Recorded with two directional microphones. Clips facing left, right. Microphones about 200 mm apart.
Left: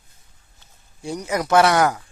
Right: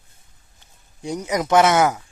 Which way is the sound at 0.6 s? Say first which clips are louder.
Right 2 dB; 20° right (ahead or behind).